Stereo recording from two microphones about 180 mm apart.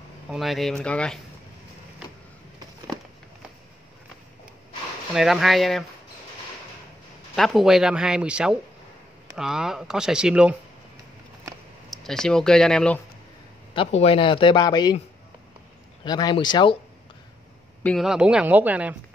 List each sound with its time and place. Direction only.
0.3 s speech: centre (ahead or behind)
5.1 s speech: centre (ahead or behind)
7.3 s speech: centre (ahead or behind)
11.9 s speech: centre (ahead or behind)
13.7 s speech: 30° left (ahead or behind)
16.0 s speech: 20° left (ahead or behind)
17.8 s speech: centre (ahead or behind)